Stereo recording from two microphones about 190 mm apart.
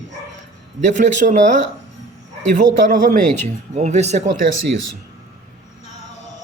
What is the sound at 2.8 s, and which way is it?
Speech, 45° right (ahead or behind).